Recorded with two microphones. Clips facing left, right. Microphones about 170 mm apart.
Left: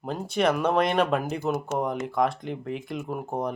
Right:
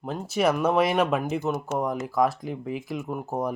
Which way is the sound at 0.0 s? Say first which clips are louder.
Even; 5° right (ahead or behind).